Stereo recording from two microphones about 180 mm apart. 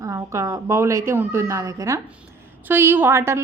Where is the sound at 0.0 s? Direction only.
15° right (ahead or behind).